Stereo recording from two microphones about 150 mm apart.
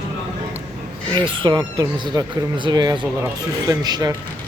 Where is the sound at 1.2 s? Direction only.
35° right (ahead or behind).